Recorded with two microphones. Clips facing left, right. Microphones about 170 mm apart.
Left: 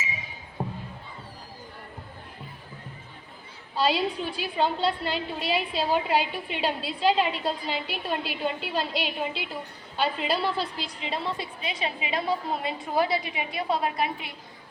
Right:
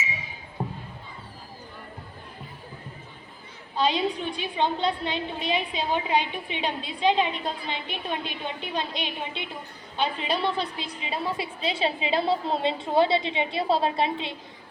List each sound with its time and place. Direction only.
3.8 s a woman's voice: 5° left (ahead or behind)
11.6 s a woman's voice: 30° right (ahead or behind)